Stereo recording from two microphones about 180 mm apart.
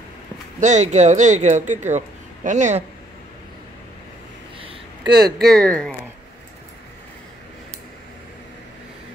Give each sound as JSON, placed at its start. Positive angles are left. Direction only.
{"t": 0.6, "sound": "speech", "side_deg": -40}
{"t": 4.6, "sound": "a sound", "side_deg": -25}
{"t": 5.4, "sound": "speech", "side_deg": 5}